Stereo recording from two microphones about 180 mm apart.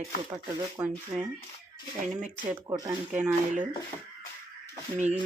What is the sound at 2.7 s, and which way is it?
Speech, 25° right (ahead or behind).